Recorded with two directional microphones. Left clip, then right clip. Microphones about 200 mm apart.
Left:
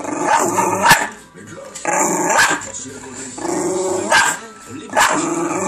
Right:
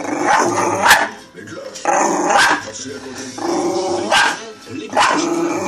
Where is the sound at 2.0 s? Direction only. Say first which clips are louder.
Right 1 dB; 25° left (ahead or behind).